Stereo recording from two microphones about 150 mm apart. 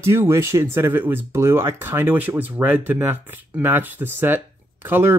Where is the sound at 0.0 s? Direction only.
15° right (ahead or behind).